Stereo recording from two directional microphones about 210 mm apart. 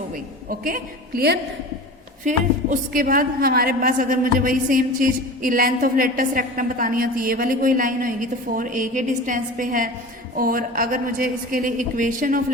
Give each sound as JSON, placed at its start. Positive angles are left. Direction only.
{"t": 0.4, "sound": "a woman's voice", "side_deg": -40}